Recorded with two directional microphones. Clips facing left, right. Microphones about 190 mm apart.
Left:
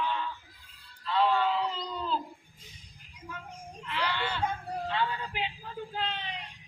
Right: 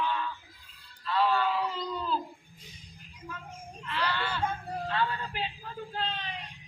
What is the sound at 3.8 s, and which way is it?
Whimper, 15° left (ahead or behind).